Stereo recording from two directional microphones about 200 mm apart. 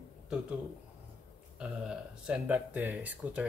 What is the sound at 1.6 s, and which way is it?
Speech, 5° right (ahead or behind).